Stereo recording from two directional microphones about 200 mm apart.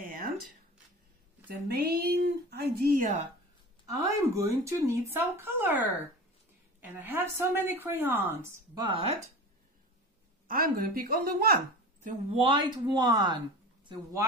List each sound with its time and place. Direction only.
0.0 s a sound: 45° right (ahead or behind)
1.5 s speech: 50° right (ahead or behind)
4.2 s speech: 15° right (ahead or behind)
7.0 s speech: 10° right (ahead or behind)
10.5 s speech: 45° right (ahead or behind)
12.3 s speech: 25° right (ahead or behind)